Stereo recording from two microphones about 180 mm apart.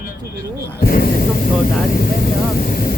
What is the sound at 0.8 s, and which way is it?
Speech, 55° left (ahead or behind).